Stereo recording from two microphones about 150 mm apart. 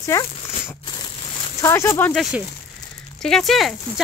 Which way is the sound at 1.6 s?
15° left (ahead or behind).